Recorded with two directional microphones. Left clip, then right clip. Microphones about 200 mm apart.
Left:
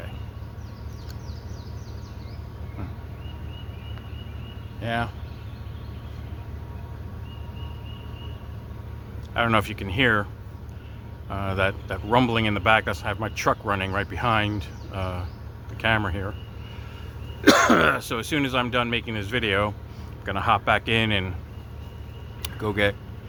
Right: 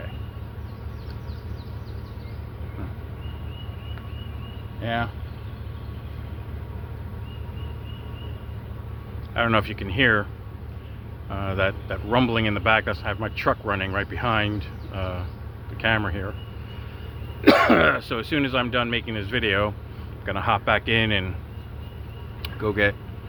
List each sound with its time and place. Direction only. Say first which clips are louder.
4.8 s speech: right 1 dB; 25° left (ahead or behind)
9.3 s speech: even; 20° left (ahead or behind)
11.3 s speech: even; 20° left (ahead or behind)
17.4 s speech: right 1 dB; 15° left (ahead or behind)
22.4 s speech: right 2 dB; 20° left (ahead or behind)